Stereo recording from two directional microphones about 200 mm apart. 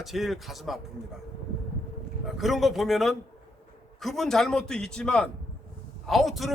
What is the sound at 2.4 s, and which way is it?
Speech, centre (ahead or behind).